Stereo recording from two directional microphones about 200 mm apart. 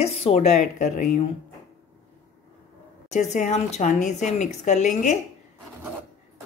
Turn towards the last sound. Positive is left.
turn(degrees=35)  # may be behind; listen again after turning